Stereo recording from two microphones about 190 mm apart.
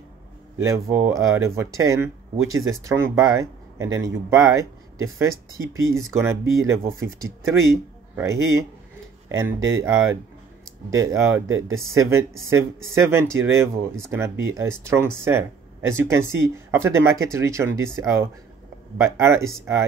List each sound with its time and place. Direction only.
0.6 s speech: 15° right (ahead or behind)
11.0 s speech: 15° right (ahead or behind)